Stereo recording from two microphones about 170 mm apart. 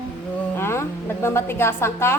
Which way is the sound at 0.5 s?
15° left (ahead or behind).